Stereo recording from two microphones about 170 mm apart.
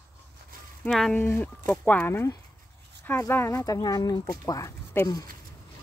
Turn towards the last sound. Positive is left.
turn(degrees=20)  # may be behind; listen again after turning